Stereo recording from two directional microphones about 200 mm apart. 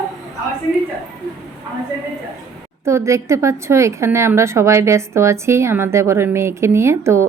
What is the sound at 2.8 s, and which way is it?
A woman's voice, 15° right (ahead or behind).